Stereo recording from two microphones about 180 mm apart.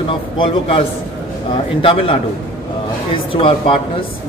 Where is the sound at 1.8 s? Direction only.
30° left (ahead or behind).